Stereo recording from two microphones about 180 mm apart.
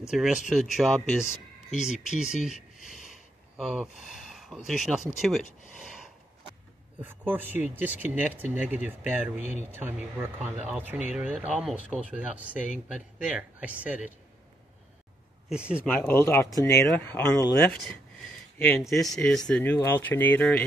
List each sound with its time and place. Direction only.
0.1 s speech: 5° right (ahead or behind)
1.2 s a sound: 40° left (ahead or behind)
1.8 s speech: 5° right (ahead or behind)
3.5 s speech: centre (ahead or behind)
7.0 s speech: 10° right (ahead or behind)
9.4 s speech: 40° left (ahead or behind)
9.7 s speech: 10° right (ahead or behind)
15.5 s speech: 5° right (ahead or behind)
15.8 s speech: 10° left (ahead or behind)